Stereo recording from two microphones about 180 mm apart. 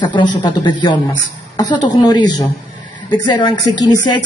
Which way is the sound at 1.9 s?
25° left (ahead or behind).